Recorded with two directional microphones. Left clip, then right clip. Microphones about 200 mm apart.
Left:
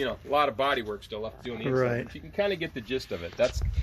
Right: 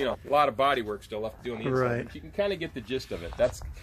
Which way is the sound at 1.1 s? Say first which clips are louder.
Right 2 dB; 25° right (ahead or behind).